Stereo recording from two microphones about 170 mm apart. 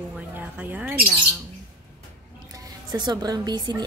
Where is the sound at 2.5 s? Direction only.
25° right (ahead or behind).